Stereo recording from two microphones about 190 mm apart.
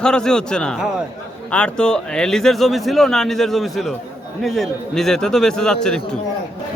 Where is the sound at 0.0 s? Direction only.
5° left (ahead or behind).